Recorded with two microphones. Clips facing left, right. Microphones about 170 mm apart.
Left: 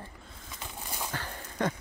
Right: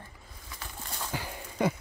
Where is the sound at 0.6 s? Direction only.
10° left (ahead or behind).